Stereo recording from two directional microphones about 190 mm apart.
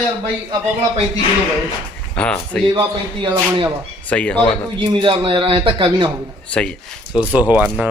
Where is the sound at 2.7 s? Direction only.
25° right (ahead or behind).